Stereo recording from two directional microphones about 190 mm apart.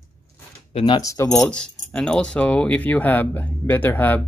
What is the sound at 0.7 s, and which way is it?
Speech, 30° left (ahead or behind).